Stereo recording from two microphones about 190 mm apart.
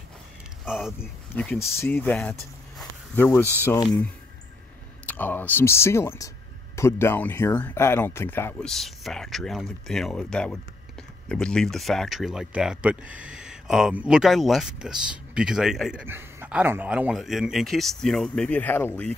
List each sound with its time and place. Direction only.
0.7 s speech: centre (ahead or behind)
1.3 s speech: 10° left (ahead or behind)
2.8 s a sound: 10° left (ahead or behind)
3.6 s speech: 15° left (ahead or behind)
5.0 s speech: 10° left (ahead or behind)